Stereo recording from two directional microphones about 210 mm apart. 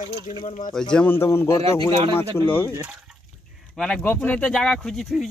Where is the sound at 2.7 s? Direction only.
5° right (ahead or behind).